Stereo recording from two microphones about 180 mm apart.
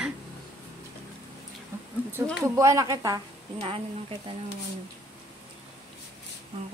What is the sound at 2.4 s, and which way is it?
Speech, 15° right (ahead or behind).